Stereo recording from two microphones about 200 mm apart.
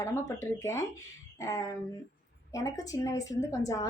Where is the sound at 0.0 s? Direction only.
15° left (ahead or behind).